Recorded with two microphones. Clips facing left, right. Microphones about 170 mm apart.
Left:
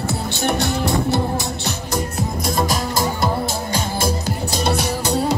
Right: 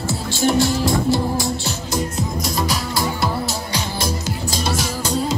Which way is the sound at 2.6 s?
45° left (ahead or behind).